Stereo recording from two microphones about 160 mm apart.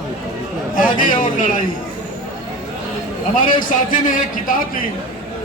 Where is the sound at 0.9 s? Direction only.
55° left (ahead or behind).